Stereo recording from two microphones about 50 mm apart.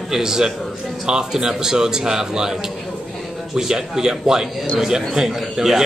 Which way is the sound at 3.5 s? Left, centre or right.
Centre.